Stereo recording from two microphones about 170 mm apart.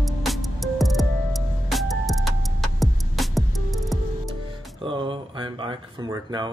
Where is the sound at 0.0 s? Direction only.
Centre (ahead or behind).